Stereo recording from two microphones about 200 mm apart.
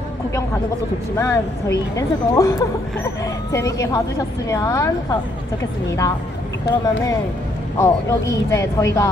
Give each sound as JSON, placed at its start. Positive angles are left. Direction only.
{"t": 1.1, "sound": "speech", "side_deg": 15}
{"t": 7.8, "sound": "speech", "side_deg": 15}